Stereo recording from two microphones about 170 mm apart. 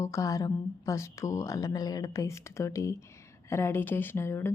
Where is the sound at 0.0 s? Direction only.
20° left (ahead or behind).